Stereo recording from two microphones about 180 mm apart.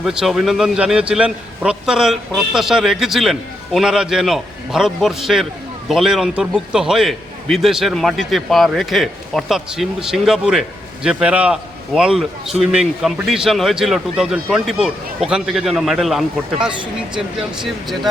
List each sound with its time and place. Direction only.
0.0 s a man's voice: 5° right (ahead or behind)